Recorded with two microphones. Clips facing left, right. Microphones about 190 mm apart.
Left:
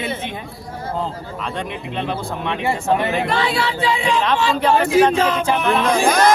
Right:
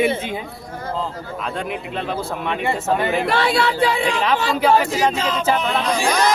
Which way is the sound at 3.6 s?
55° right (ahead or behind).